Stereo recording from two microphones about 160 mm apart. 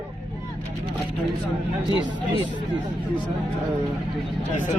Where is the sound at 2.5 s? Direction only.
30° right (ahead or behind).